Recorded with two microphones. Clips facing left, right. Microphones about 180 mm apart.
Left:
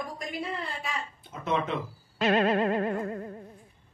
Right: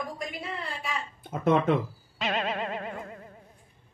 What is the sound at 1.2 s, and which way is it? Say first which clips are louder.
Speech: right 7 dB; 50° right (ahead or behind).